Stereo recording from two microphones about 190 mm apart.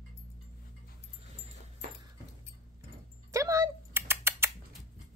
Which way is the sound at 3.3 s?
15° right (ahead or behind).